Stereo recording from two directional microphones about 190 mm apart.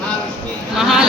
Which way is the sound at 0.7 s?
Centre (ahead or behind).